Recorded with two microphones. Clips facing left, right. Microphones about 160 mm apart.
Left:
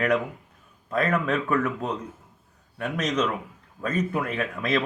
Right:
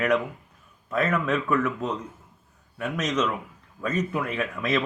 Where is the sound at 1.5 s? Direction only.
35° left (ahead or behind).